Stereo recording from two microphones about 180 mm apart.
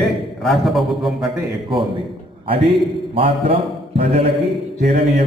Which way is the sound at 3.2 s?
30° right (ahead or behind).